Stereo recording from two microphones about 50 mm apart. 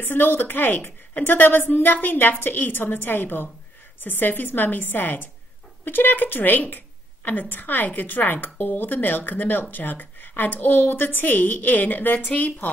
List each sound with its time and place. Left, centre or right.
0.0 s speech: left